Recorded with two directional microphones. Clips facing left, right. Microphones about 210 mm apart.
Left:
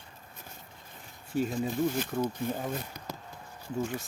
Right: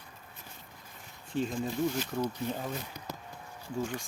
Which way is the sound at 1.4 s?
5° left (ahead or behind).